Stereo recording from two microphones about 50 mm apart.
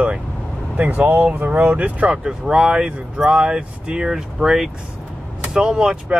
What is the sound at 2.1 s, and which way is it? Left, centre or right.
Speech, centre.